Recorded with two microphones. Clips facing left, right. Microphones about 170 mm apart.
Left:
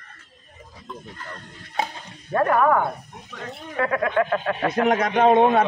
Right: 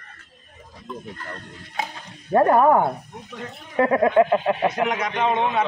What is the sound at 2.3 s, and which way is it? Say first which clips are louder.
Speech: right 3 dB; 30° right (ahead or behind).